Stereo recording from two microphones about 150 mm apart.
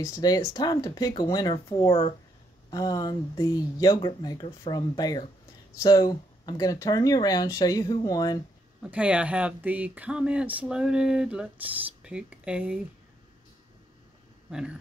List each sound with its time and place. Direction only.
0.0 s speech: 25° left (ahead or behind)
8.8 s speech: 10° right (ahead or behind)